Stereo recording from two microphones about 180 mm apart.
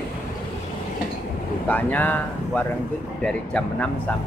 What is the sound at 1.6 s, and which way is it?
Speech, 10° left (ahead or behind).